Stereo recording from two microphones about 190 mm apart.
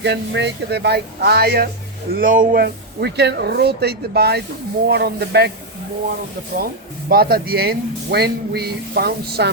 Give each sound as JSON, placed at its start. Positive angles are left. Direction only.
{"t": 0.0, "sound": "speech", "side_deg": -65}
{"t": 2.1, "sound": "speech", "side_deg": -45}
{"t": 7.1, "sound": "speech", "side_deg": -50}